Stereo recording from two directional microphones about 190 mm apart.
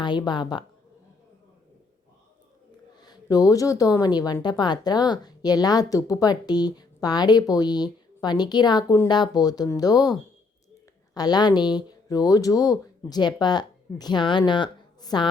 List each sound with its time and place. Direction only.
0.0 s speech: 25° left (ahead or behind)
3.0 s speech: 20° left (ahead or behind)